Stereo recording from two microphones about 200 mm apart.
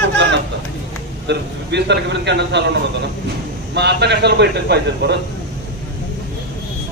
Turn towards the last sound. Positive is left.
turn(degrees=-55)  # may be behind; listen again after turning